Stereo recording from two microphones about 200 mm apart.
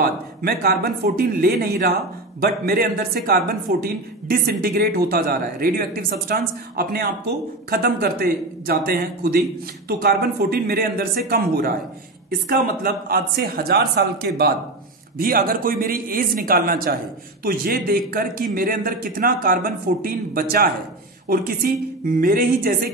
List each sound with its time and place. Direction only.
0.0 s a woman's voice: 50° right (ahead or behind)